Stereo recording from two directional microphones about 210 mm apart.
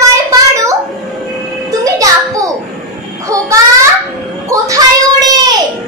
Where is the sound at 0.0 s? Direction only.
15° right (ahead or behind).